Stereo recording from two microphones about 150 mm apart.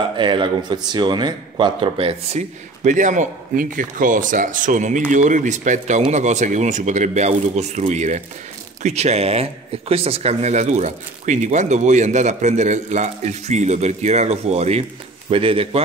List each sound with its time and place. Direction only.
0.2 s a man's voice: 30° right (ahead or behind)
2.8 s speech: 55° right (ahead or behind); by 15.8 s 40° right (ahead or behind)